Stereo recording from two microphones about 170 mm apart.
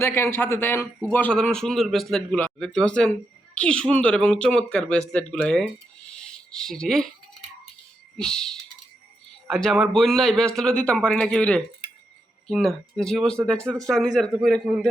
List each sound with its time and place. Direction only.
0.0 s a man's voice: 15° left (ahead or behind)
6.1 s a sound: 5° left (ahead or behind)
8.2 s a man's voice: 5° left (ahead or behind)